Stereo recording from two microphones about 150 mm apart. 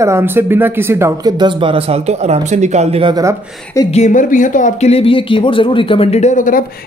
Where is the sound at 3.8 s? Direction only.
50° left (ahead or behind).